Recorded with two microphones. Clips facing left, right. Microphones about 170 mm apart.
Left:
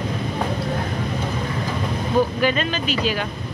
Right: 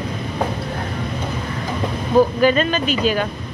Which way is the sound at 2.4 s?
45° right (ahead or behind).